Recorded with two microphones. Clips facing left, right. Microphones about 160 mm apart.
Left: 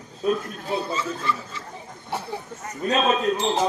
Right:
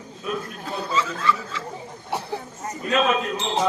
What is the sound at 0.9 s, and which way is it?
Speech, 90° right.